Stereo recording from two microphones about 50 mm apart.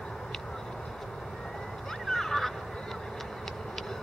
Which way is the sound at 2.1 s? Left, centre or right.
Centre.